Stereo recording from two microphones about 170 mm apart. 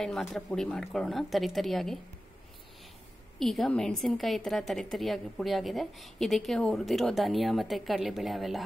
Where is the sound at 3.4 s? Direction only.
Centre (ahead or behind).